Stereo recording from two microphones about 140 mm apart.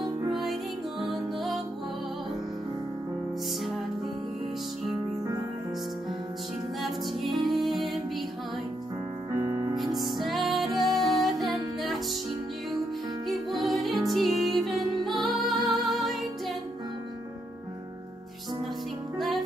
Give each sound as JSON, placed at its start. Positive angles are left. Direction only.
{"t": 0.3, "sound": "music", "side_deg": 0}
{"t": 6.8, "sound": "music", "side_deg": 0}
{"t": 9.3, "sound": "music", "side_deg": -20}
{"t": 9.9, "sound": "music", "side_deg": 0}
{"t": 13.3, "sound": "music", "side_deg": 0}
{"t": 19.1, "sound": "music", "side_deg": 0}